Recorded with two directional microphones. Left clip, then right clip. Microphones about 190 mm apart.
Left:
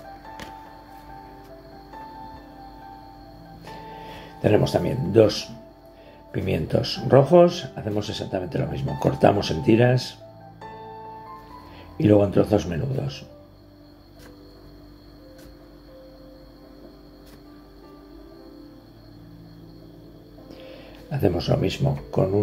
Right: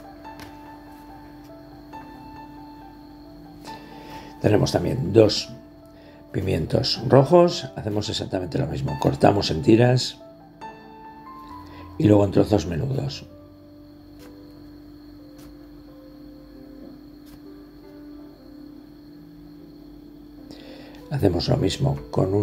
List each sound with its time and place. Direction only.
4.2 s speech: 25° right (ahead or behind)
12.0 s speech: 20° right (ahead or behind)
20.6 s speech: 20° right (ahead or behind)